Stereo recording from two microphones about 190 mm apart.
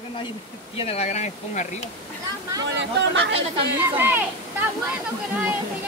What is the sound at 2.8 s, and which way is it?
Speech, 75° right (ahead or behind).